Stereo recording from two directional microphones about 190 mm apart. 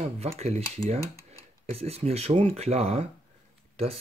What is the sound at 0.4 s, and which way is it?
Speech, 35° right (ahead or behind).